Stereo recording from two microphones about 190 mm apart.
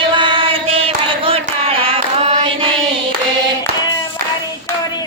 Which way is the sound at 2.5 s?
30° right (ahead or behind).